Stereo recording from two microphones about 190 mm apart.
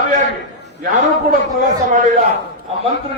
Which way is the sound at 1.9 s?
45° right (ahead or behind).